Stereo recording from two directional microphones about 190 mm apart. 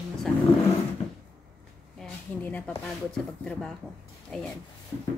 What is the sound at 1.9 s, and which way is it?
A woman's voice, 5° left (ahead or behind).